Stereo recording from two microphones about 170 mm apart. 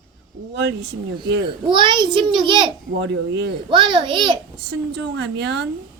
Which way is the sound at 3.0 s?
90° right.